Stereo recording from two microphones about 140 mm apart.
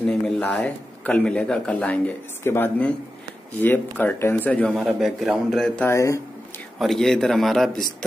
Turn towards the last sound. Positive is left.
turn(degrees=0)  # may be behind; listen again after turning